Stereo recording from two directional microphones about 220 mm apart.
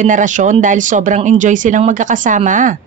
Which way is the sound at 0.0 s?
35° right (ahead or behind).